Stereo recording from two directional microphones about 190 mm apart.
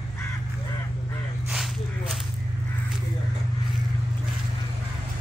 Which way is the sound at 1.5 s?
5° right (ahead or behind).